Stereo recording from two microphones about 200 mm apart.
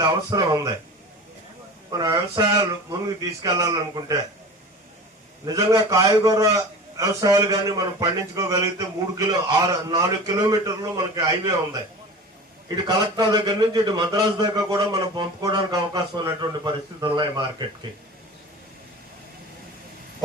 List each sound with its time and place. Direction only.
0.0 s a man's voice: 20° right (ahead or behind)
1.9 s a man's voice: 20° right (ahead or behind)
5.5 s a man's voice: 15° right (ahead or behind)